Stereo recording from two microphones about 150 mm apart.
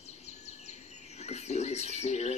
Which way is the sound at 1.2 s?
45° left (ahead or behind).